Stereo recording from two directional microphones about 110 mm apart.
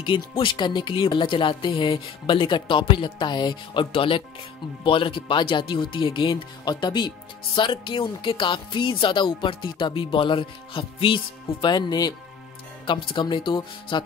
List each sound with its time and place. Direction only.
0.0 s speech: 50° left (ahead or behind)
3.9 s speech: 55° left (ahead or behind)
11.6 s speech: 40° left (ahead or behind)